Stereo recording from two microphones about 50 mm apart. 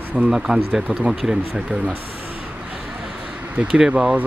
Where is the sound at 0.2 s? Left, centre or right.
Right.